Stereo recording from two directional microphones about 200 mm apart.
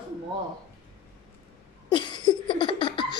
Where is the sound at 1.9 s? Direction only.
25° left (ahead or behind).